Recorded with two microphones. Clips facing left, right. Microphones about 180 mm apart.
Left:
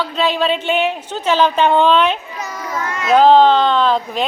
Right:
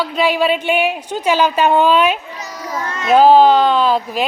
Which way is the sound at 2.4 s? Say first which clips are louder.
Left 3 dB; 55° left (ahead or behind).